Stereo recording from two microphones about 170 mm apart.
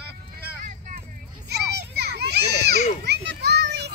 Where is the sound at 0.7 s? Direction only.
55° right (ahead or behind).